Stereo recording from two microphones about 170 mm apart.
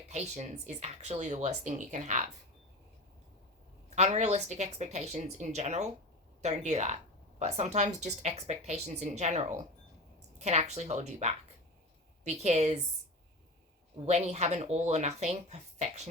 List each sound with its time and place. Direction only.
0.1 s speech: 40° right (ahead or behind)
3.8 s speech: 40° right (ahead or behind)
14.0 s speech: 40° right (ahead or behind)